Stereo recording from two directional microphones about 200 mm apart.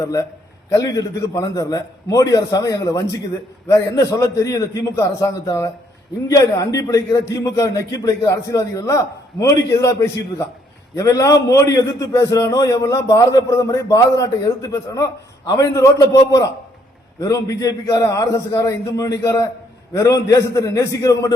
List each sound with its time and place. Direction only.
0.0 s a man's voice: 15° left (ahead or behind)